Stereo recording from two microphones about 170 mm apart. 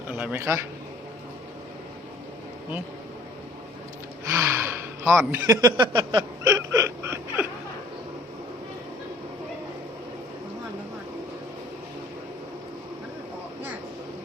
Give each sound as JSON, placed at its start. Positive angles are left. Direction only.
{"t": 0.1, "sound": "a man's voice", "side_deg": -10}
{"t": 4.3, "sound": "speech", "side_deg": -10}